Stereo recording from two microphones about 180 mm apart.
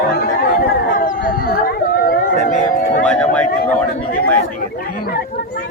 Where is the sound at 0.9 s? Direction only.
50° left (ahead or behind).